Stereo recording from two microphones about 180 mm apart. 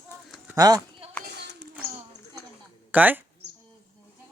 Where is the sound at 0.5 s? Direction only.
20° right (ahead or behind).